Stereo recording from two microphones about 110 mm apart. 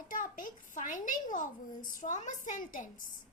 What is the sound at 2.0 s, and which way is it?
Speech, 90° left.